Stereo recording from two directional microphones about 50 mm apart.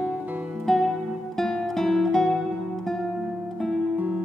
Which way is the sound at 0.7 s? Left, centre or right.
Centre.